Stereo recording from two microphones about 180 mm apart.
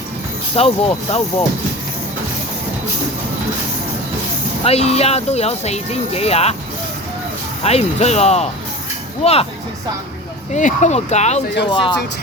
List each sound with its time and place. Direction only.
0.5 s speech: 35° left (ahead or behind)
4.6 s speech: 35° left (ahead or behind)
7.6 s speech: 35° left (ahead or behind)
10.5 s speech: 45° left (ahead or behind)
11.7 s speech: 25° left (ahead or behind)